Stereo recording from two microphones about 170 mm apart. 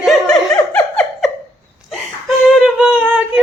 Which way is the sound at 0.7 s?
5° left (ahead or behind).